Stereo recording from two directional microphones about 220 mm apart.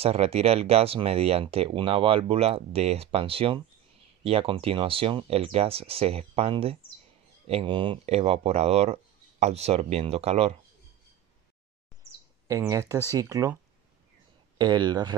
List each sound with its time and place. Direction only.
0.0 s speech: 30° right (ahead or behind)
12.4 s speech: 15° right (ahead or behind)
14.6 s speech: 20° right (ahead or behind)